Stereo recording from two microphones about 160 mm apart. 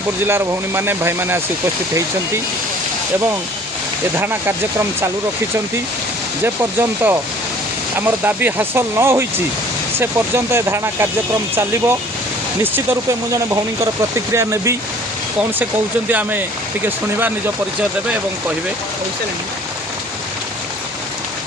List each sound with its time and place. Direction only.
0.3 s speech: 15° right (ahead or behind)
4.2 s speech: 15° right (ahead or behind)
6.4 s speech: 15° right (ahead or behind)
16.0 s speech: 10° right (ahead or behind)